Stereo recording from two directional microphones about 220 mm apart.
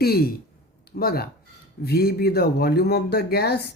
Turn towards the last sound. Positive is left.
turn(degrees=45)  # may be behind; listen again after turning